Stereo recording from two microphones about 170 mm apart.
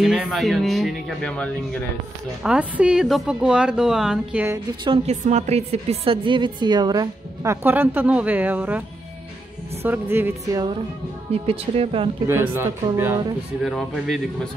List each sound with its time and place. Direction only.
0.0 s speech: 5° right (ahead or behind)
2.4 s speech: 5° right (ahead or behind)
4.8 s a woman's voice: 35° right (ahead or behind); by 8.8 s 10° right (ahead or behind)
9.8 s speech: 15° right (ahead or behind)
11.4 s speech: 35° right (ahead or behind)
12.3 s speech: 15° right (ahead or behind)
13.7 s speech: centre (ahead or behind)